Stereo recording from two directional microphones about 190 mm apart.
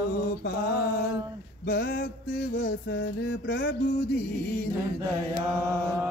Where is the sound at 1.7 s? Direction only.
55° left (ahead or behind).